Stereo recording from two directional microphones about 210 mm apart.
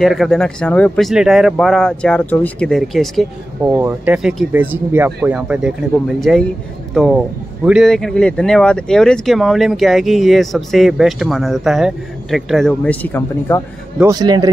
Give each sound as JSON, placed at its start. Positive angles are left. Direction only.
{"t": 0.0, "sound": "speech", "side_deg": 0}
{"t": 3.7, "sound": "a man's voice", "side_deg": -10}
{"t": 13.9, "sound": "a man's voice", "side_deg": -15}